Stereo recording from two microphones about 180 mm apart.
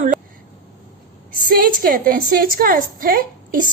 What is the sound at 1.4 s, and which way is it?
A woman's voice, 55° right (ahead or behind).